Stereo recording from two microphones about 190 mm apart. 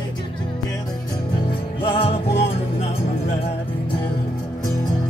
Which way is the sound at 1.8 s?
30° left (ahead or behind).